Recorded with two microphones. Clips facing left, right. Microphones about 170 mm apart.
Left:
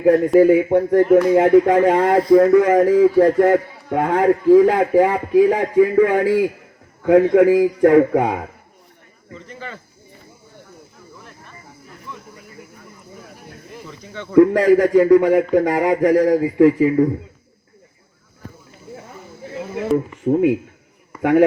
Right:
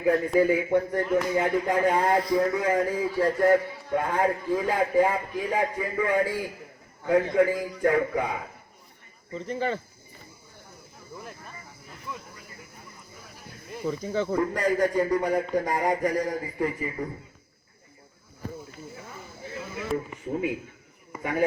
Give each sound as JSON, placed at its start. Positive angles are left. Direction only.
{"t": 0.3, "sound": "a man's voice", "side_deg": 65}
{"t": 3.2, "sound": "a man's voice", "side_deg": 60}
{"t": 9.5, "sound": "speech", "side_deg": -35}
{"t": 13.8, "sound": "speech", "side_deg": -40}
{"t": 14.3, "sound": "a man's voice", "side_deg": 90}
{"t": 20.2, "sound": "a man's voice", "side_deg": 60}